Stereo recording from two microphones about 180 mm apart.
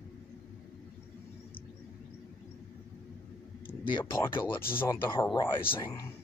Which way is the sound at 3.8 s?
25° left (ahead or behind).